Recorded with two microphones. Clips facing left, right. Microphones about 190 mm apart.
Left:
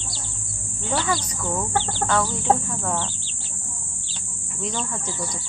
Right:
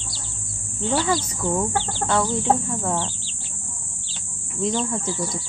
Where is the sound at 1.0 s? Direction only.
25° right (ahead or behind).